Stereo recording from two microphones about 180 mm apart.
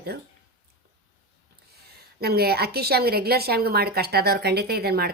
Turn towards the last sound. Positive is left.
turn(degrees=-60)  # may be behind; listen again after turning